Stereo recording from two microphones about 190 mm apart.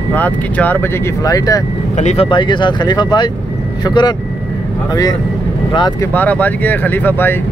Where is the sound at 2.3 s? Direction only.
25° left (ahead or behind).